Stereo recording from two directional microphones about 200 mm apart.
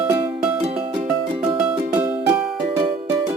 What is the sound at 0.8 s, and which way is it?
Music, 25° right (ahead or behind).